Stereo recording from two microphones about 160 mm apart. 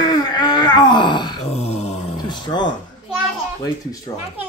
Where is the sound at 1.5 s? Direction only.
40° left (ahead or behind).